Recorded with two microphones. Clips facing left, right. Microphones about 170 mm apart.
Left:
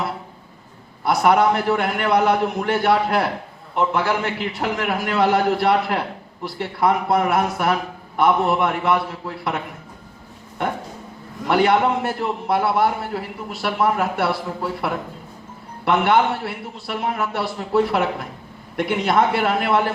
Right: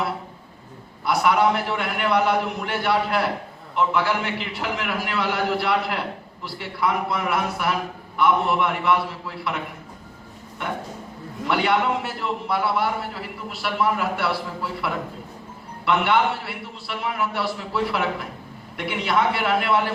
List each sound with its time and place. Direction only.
1.0 s a man's voice: 45° left (ahead or behind)
11.4 s a man's voice: 45° left (ahead or behind)